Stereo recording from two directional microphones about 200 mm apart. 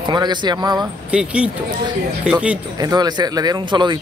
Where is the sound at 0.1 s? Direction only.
20° right (ahead or behind).